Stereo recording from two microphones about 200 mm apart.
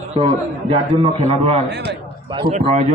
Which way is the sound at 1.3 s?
30° right (ahead or behind).